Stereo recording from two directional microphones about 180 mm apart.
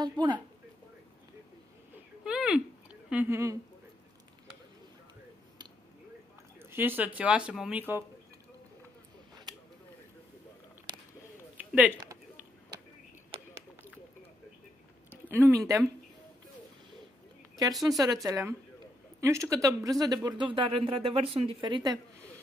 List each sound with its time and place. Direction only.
0.0 s speech: 25° right (ahead or behind)
2.2 s a sound: 5° right (ahead or behind)
6.6 s speech: 10° right (ahead or behind)
11.5 s a sound: 10° right (ahead or behind)
15.2 s speech: 10° right (ahead or behind)
17.8 s speech: 20° right (ahead or behind)